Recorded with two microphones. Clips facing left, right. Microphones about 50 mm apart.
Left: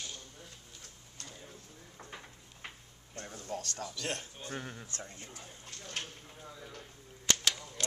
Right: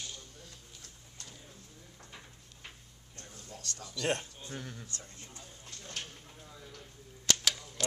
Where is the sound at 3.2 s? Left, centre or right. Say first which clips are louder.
Left 9 dB; left.